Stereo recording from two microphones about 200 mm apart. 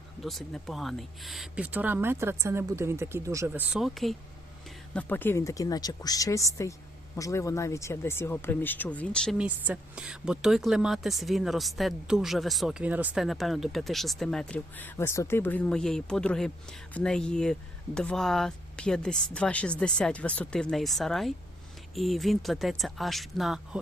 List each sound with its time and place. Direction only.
0.2 s speech: centre (ahead or behind)